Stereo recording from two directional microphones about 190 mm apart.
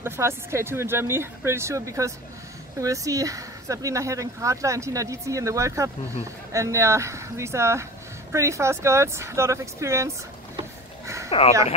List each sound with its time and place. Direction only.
0.0 s speech: 15° right (ahead or behind)
11.2 s speech: 35° left (ahead or behind)